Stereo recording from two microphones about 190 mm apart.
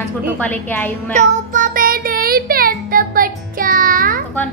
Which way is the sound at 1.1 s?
40° right (ahead or behind).